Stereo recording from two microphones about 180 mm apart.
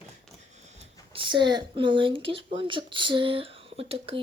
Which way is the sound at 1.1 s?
25° right (ahead or behind).